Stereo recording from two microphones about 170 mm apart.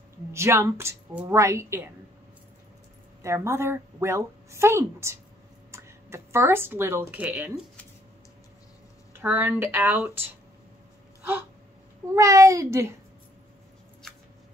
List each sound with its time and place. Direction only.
0.3 s a woman's voice: 15° right (ahead or behind)
3.2 s a woman's voice: 15° right (ahead or behind)
9.1 s a woman's voice: 15° right (ahead or behind)
12.2 s a child's voice: 20° right (ahead or behind)
14.0 s a sound: 5° left (ahead or behind)